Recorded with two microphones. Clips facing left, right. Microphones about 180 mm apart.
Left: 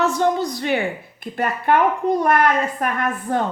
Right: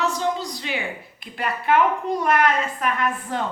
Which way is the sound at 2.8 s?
45° left (ahead or behind).